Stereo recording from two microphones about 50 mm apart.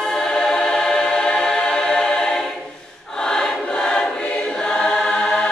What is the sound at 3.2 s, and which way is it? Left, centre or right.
Choir, centre.